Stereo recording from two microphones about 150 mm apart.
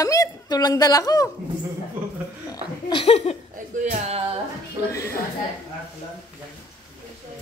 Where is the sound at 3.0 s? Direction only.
45° left (ahead or behind).